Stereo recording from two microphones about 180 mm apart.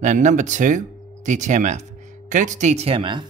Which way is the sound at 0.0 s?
45° right (ahead or behind).